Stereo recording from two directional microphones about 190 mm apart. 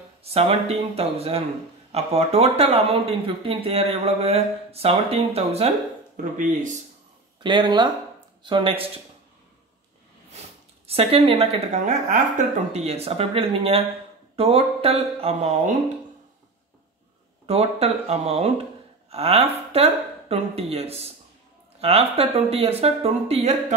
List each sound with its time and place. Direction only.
0.2 s speech: 30° right (ahead or behind)
7.4 s speech: 25° right (ahead or behind)
10.9 s speech: 30° right (ahead or behind)
17.5 s speech: 35° right (ahead or behind)